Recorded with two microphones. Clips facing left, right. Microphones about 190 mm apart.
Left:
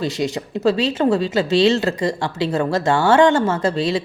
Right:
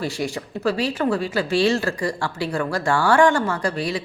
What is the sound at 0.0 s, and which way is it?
Speech, 20° left (ahead or behind).